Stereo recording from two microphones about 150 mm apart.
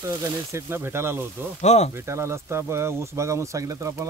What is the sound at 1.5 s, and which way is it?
Speech, 50° left (ahead or behind).